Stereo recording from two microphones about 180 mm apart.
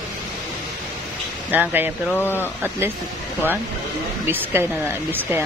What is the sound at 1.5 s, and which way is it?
Speech, 10° right (ahead or behind).